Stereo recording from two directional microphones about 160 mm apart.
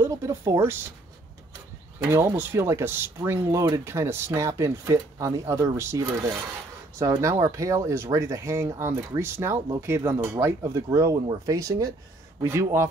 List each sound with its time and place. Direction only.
0.0 s speech: 15° right (ahead or behind)
2.0 s speech: 15° right (ahead or behind)